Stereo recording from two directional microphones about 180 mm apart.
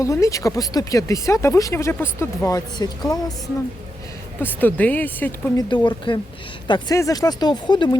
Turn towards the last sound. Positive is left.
turn(degrees=25)  # may be behind; listen again after turning